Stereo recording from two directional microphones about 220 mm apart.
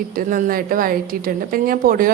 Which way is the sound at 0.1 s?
40° right (ahead or behind).